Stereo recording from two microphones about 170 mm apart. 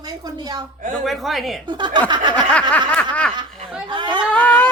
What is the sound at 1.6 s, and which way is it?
Speech, 25° right (ahead or behind).